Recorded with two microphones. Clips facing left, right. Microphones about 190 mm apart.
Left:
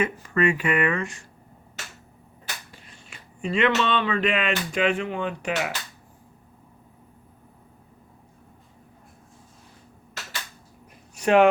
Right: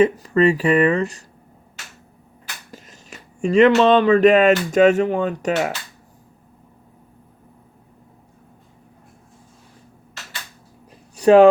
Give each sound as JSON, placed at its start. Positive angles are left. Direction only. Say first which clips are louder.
{"t": 0.0, "sound": "speech", "louder": "right 8 dB", "side_deg": -35}
{"t": 2.7, "sound": "speech", "louder": "right 7 dB", "side_deg": -40}
{"t": 11.2, "sound": "speech", "louder": "right 7 dB", "side_deg": -35}